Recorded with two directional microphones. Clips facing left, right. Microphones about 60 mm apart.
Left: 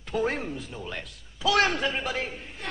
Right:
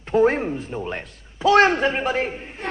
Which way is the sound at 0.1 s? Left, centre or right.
Right.